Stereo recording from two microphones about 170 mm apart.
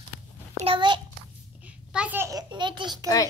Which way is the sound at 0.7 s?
25° right (ahead or behind).